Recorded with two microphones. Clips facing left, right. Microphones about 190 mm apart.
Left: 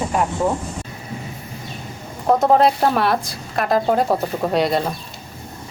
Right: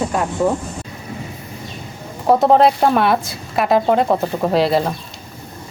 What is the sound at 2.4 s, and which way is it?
Speech, centre (ahead or behind).